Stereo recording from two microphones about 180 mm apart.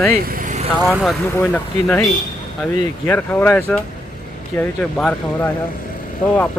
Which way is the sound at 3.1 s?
10° left (ahead or behind).